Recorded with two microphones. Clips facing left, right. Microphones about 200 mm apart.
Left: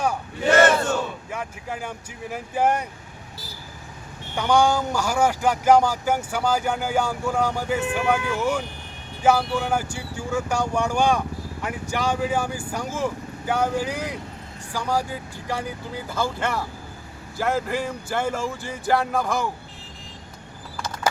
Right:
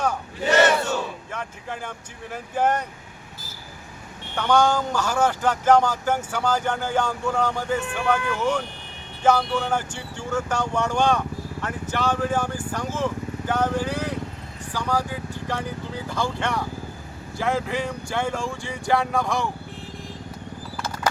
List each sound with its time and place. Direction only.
0.5 s battle cry: 50° left (ahead or behind)
1.3 s speech: 10° left (ahead or behind)
4.4 s speech: 10° left (ahead or behind)